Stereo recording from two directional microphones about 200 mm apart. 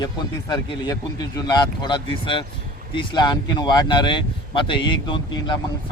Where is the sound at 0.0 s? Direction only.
20° left (ahead or behind).